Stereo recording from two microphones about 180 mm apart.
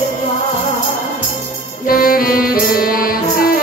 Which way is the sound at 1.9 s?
55° left (ahead or behind).